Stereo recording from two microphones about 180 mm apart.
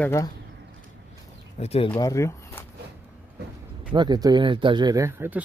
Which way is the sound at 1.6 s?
35° left (ahead or behind).